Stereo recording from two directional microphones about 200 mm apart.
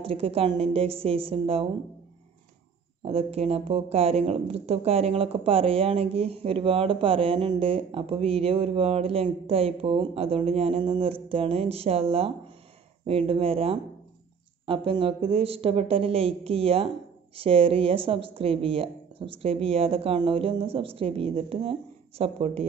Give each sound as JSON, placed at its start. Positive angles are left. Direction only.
{"t": 0.0, "sound": "speech", "side_deg": -30}
{"t": 3.1, "sound": "speech", "side_deg": -30}